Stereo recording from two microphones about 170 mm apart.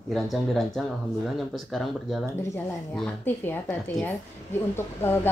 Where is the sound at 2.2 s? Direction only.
15° left (ahead or behind).